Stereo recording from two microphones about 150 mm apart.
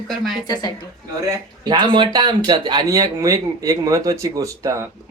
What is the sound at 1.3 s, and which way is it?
Speech, 25° right (ahead or behind).